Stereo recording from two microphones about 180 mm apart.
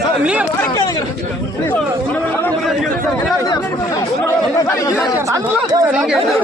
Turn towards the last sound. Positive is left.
turn(degrees=-5)  # may be behind; listen again after turning